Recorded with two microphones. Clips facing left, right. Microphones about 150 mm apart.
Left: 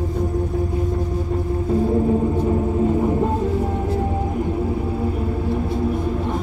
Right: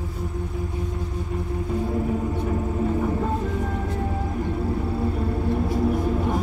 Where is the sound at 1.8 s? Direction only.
25° left (ahead or behind).